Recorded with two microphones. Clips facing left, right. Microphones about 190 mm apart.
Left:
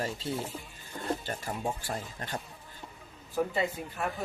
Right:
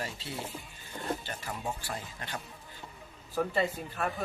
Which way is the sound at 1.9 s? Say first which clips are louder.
Left 3 dB; 45° left (ahead or behind).